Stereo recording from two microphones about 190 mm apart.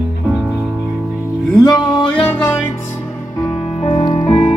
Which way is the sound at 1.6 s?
20° left (ahead or behind).